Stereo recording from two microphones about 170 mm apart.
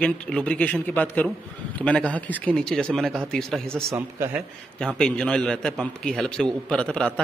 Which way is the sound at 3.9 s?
15° right (ahead or behind).